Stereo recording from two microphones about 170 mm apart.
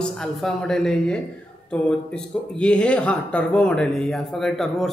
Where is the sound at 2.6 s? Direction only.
5° left (ahead or behind).